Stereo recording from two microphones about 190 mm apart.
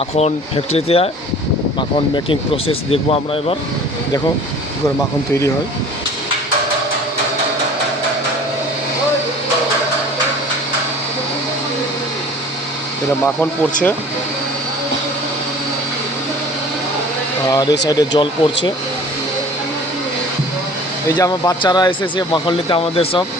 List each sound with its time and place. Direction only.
0.2 s speech: 35° left (ahead or behind)
2.1 s speech: 30° left (ahead or behind)
17.5 s speech: 20° left (ahead or behind)
21.2 s speech: 20° left (ahead or behind)